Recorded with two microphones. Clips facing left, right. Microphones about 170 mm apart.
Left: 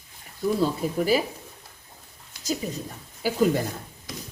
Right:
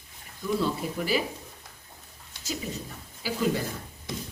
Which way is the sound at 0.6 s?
40° left (ahead or behind).